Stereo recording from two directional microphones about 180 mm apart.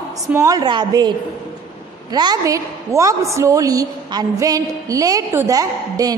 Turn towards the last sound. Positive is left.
turn(degrees=-20)  # may be behind; listen again after turning